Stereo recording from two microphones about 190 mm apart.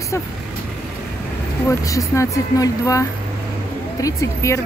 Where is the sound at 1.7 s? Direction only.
15° left (ahead or behind).